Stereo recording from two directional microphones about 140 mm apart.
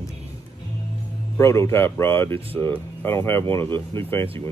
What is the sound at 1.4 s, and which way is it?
Speech, 20° left (ahead or behind).